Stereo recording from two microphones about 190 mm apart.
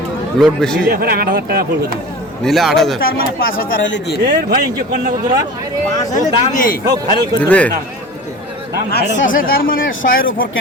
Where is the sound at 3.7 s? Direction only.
75° left (ahead or behind).